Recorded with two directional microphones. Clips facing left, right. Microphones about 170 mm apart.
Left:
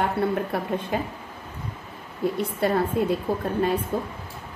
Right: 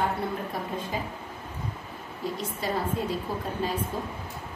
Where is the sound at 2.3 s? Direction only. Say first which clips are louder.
Left 7 dB; 60° left (ahead or behind).